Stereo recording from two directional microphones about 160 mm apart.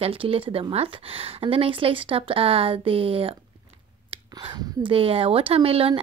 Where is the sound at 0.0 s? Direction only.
35° right (ahead or behind).